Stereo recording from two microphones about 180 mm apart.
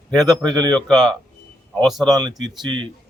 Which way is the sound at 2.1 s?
25° right (ahead or behind).